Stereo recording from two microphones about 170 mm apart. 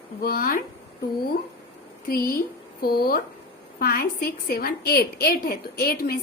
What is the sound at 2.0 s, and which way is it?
A woman's voice, 60° left (ahead or behind).